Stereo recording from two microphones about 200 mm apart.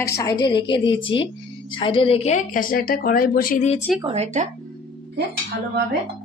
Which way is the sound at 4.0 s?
30° right (ahead or behind).